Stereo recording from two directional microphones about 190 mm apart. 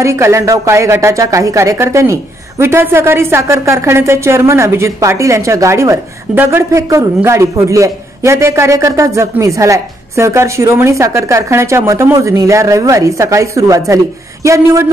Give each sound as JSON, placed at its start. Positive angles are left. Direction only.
{"t": 0.0, "sound": "a woman's voice", "side_deg": -15}